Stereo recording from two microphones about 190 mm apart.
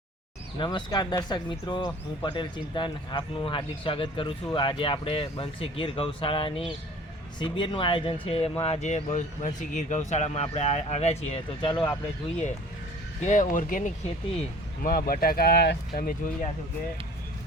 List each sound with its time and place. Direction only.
0.6 s speech: 25° left (ahead or behind)
13.2 s speech: 40° left (ahead or behind)